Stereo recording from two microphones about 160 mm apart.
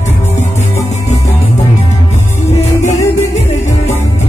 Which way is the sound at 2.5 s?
45° left (ahead or behind).